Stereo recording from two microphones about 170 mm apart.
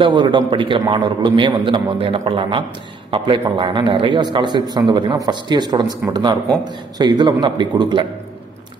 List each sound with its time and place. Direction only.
0.0 s a man's voice: 30° right (ahead or behind)